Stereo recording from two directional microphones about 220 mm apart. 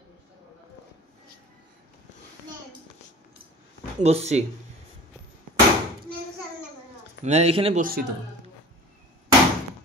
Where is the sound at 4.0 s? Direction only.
30° right (ahead or behind).